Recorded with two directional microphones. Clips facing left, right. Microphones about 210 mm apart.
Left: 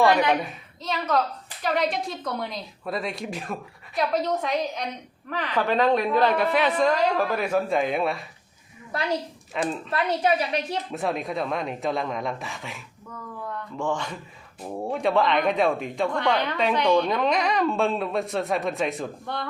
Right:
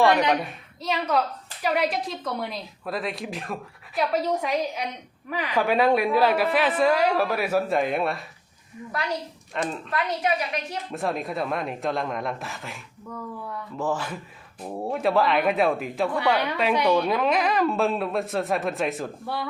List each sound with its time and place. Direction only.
0.8 s a woman's voice: 10° right (ahead or behind)
8.9 s a woman's voice: 25° left (ahead or behind)
9.6 s a woman's voice: centre (ahead or behind)
9.9 s a woman's voice: 30° left (ahead or behind)
10.9 s a woman's voice: centre (ahead or behind)